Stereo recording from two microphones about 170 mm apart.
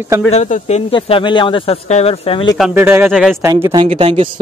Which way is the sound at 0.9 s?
30° left (ahead or behind).